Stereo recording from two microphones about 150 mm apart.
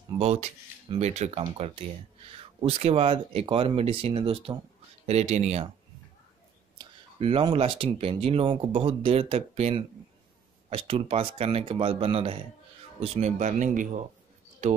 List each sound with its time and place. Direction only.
0.2 s speech: 45° right (ahead or behind)
7.2 s speech: 40° right (ahead or behind); by 14.0 s 55° right (ahead or behind)